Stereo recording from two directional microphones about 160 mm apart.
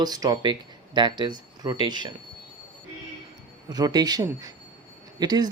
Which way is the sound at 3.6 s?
25° right (ahead or behind).